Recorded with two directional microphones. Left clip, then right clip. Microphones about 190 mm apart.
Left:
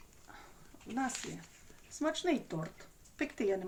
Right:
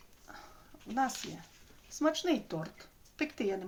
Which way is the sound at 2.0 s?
20° right (ahead or behind).